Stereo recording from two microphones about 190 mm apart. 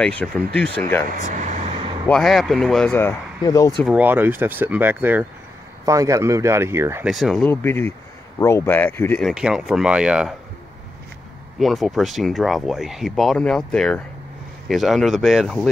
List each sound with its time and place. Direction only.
0.0 s speech: 5° left (ahead or behind)
1.1 s air conditioning: 40° right (ahead or behind)
2.0 s speech: centre (ahead or behind); by 3.7 s 20° left (ahead or behind)
3.7 s speech: centre (ahead or behind)
7.1 s speech: centre (ahead or behind)
9.3 s speech: 5° right (ahead or behind)
11.6 s speech: centre (ahead or behind)